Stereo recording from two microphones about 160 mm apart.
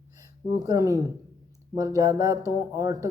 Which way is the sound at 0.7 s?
20° right (ahead or behind).